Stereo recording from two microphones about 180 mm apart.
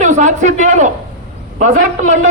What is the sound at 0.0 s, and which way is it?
A man's voice, 40° right (ahead or behind).